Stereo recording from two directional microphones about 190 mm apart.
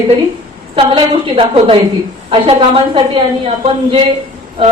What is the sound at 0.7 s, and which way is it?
A woman's voice, 30° right (ahead or behind).